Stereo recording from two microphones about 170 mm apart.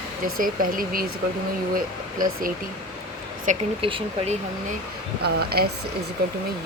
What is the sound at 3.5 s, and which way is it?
Speech, 45° right (ahead or behind).